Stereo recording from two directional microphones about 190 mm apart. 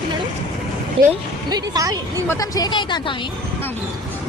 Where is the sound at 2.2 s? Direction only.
20° left (ahead or behind).